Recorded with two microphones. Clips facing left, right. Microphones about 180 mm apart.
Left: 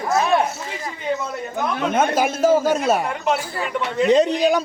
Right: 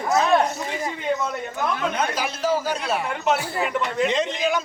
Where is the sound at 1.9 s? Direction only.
50° left (ahead or behind).